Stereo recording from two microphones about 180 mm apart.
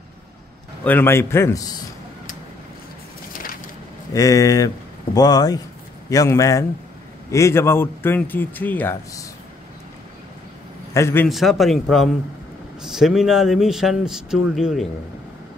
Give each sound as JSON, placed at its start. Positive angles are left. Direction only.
{"t": 0.8, "sound": "speech", "side_deg": 10}
{"t": 4.1, "sound": "speech", "side_deg": 20}
{"t": 10.9, "sound": "a man's voice", "side_deg": 15}
{"t": 11.2, "sound": "speech", "side_deg": 0}